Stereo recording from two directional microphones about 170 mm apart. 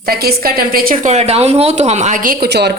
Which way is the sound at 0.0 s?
65° right (ahead or behind).